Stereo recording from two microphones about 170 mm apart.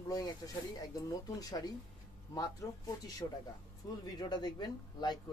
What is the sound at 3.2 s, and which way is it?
Speech, 25° left (ahead or behind).